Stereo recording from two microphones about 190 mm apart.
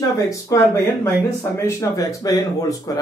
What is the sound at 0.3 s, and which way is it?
Speech, 15° left (ahead or behind).